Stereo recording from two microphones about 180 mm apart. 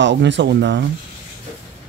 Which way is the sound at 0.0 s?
80° right.